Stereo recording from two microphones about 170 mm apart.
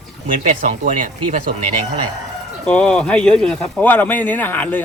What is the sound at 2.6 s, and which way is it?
Speech, 5° left (ahead or behind).